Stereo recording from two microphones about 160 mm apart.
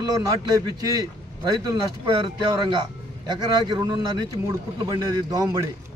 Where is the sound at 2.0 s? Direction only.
25° right (ahead or behind).